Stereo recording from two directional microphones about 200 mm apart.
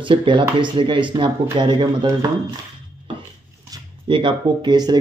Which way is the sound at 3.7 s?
25° right (ahead or behind).